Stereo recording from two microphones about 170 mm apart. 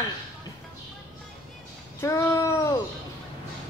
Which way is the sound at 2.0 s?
15° left (ahead or behind).